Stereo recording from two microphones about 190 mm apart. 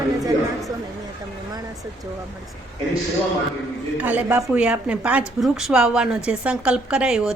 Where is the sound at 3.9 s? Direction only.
10° right (ahead or behind).